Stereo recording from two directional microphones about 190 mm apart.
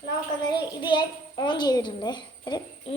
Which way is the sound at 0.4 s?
25° left (ahead or behind).